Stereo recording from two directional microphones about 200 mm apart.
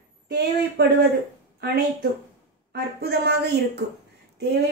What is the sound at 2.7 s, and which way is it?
A woman's voice, 55° right (ahead or behind).